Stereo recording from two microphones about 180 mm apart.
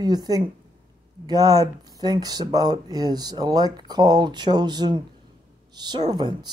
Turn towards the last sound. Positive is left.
turn(degrees=-25)  # may be behind; listen again after turning